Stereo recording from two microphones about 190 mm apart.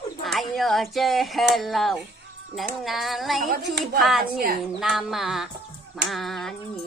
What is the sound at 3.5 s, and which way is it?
Speech, 55° right (ahead or behind).